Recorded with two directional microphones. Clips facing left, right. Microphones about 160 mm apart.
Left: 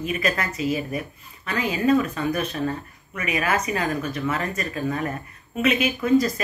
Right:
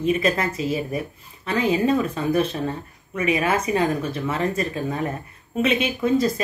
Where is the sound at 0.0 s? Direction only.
30° right (ahead or behind).